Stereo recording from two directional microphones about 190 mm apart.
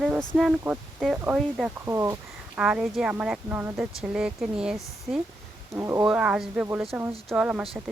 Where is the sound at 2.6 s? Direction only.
5° right (ahead or behind).